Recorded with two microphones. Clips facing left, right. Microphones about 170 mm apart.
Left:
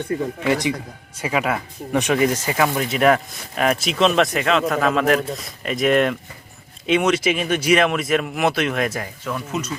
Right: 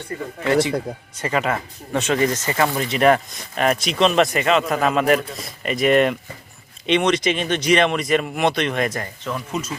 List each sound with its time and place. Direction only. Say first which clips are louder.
0.4 s speech: right 5 dB; 15° left (ahead or behind); by 9.7 s centre (ahead or behind)